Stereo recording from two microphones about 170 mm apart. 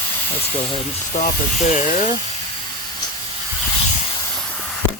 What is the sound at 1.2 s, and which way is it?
Speech, 45° left (ahead or behind).